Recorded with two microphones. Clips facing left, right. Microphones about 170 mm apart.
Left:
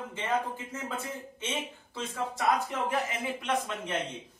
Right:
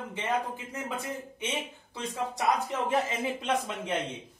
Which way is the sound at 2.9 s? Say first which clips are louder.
Right 3 dB; 25° right (ahead or behind).